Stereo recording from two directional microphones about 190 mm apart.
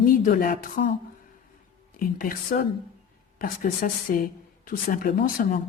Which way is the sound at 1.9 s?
50° left (ahead or behind).